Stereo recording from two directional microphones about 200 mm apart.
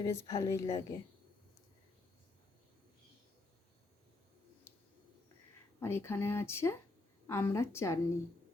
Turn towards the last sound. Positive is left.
turn(degrees=15)  # may be behind; listen again after turning